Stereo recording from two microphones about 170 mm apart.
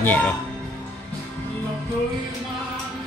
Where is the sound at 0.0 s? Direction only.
10° left (ahead or behind).